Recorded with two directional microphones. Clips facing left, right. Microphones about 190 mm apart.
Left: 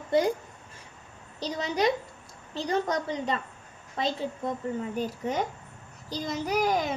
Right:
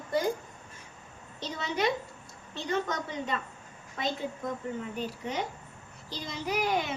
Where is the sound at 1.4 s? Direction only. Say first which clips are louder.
Left 4 dB; 35° left (ahead or behind).